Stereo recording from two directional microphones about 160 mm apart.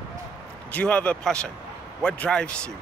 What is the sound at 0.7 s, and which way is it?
Speech, 5° left (ahead or behind).